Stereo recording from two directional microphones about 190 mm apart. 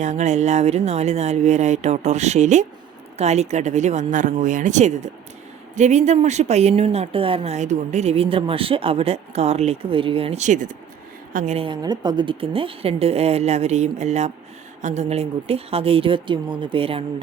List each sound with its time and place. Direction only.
0.0 s speech: 40° right (ahead or behind)